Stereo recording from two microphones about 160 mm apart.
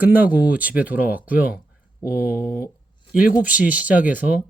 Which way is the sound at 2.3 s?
15° left (ahead or behind).